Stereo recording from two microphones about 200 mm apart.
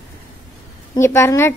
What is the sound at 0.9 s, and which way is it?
Speech, 15° left (ahead or behind).